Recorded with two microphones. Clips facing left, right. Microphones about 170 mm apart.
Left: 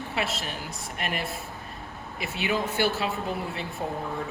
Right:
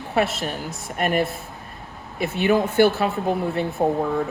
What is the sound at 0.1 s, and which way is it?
A woman's voice, 55° right (ahead or behind).